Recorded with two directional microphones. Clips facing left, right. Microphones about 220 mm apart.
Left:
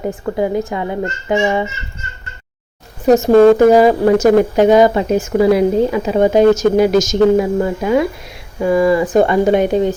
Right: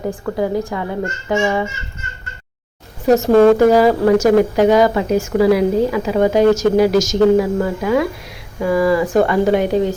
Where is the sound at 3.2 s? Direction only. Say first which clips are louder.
Left 2 dB; 20° left (ahead or behind).